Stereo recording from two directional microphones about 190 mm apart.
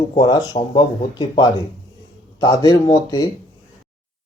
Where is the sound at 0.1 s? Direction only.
25° left (ahead or behind).